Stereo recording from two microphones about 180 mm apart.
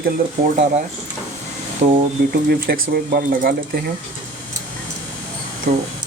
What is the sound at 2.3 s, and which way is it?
Speech, 60° right (ahead or behind).